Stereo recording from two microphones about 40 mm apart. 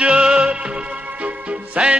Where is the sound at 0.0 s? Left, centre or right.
Right.